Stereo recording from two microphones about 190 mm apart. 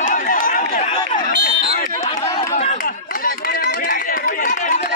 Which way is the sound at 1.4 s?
55° left (ahead or behind).